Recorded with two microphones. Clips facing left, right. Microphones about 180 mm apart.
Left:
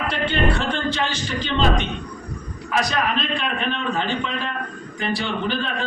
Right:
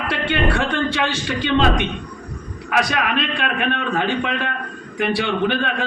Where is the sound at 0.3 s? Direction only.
65° right (ahead or behind).